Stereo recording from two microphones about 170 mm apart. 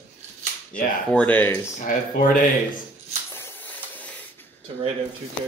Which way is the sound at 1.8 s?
55° left (ahead or behind).